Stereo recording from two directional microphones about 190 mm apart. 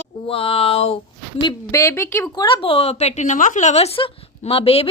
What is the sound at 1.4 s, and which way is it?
Speech, 20° left (ahead or behind).